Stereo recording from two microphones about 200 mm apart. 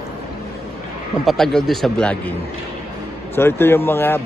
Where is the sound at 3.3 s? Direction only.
10° left (ahead or behind).